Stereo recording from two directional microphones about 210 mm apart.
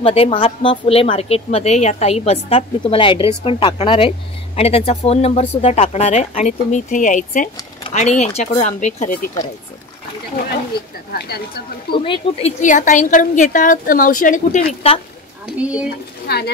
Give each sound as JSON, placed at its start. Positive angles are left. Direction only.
{"t": 0.0, "sound": "a woman's voice", "side_deg": 25}
{"t": 11.1, "sound": "a woman's voice", "side_deg": 50}
{"t": 11.9, "sound": "a woman's voice", "side_deg": 25}
{"t": 15.4, "sound": "a woman's voice", "side_deg": -5}
{"t": 16.3, "sound": "a woman's voice", "side_deg": 50}